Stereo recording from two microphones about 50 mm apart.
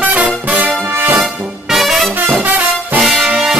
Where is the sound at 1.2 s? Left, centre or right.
Centre.